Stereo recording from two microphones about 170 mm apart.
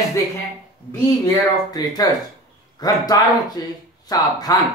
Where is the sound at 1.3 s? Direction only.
20° left (ahead or behind).